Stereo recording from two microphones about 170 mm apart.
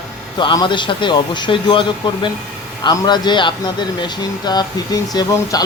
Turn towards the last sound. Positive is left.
turn(degrees=20)  # may be behind; listen again after turning